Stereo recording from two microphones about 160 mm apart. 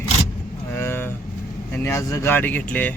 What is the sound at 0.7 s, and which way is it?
Vehicle, 15° left (ahead or behind).